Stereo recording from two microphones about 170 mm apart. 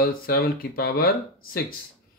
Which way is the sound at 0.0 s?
60° left (ahead or behind).